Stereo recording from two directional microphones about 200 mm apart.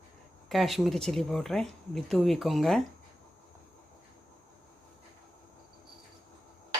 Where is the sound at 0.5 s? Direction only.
Centre (ahead or behind).